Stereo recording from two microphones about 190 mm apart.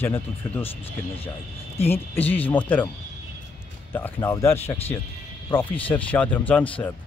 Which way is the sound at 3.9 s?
10° left (ahead or behind).